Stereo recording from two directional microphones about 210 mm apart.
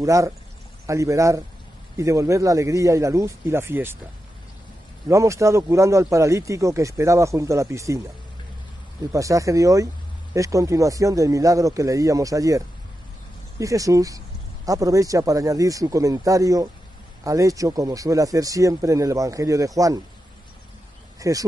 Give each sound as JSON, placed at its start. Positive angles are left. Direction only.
{"t": 0.0, "sound": "speech", "side_deg": -15}
{"t": 5.0, "sound": "speech", "side_deg": -15}
{"t": 9.1, "sound": "speech", "side_deg": -15}
{"t": 21.2, "sound": "speech", "side_deg": -15}